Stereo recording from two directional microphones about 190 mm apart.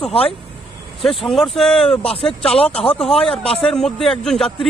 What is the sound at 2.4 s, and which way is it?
Speech, 30° left (ahead or behind).